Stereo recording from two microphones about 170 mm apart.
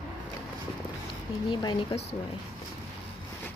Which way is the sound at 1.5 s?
30° left (ahead or behind).